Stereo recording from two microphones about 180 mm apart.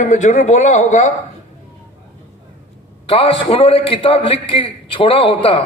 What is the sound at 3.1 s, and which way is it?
A man's voice, 30° left (ahead or behind).